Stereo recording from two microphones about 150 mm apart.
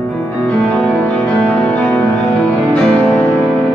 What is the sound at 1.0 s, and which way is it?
Music, 5° left (ahead or behind).